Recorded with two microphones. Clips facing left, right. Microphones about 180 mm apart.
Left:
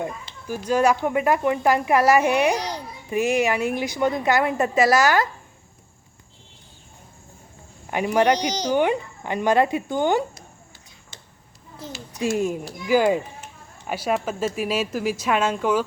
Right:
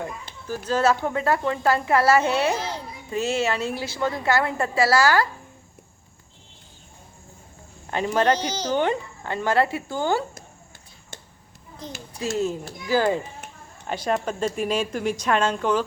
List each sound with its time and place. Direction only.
0.4 s speech: 15° left (ahead or behind)
7.9 s speech: 15° left (ahead or behind)
12.2 s speech: 15° left (ahead or behind)